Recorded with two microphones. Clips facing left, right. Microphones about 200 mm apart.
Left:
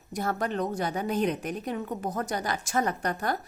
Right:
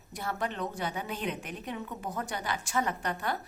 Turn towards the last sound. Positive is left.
turn(degrees=40)  # may be behind; listen again after turning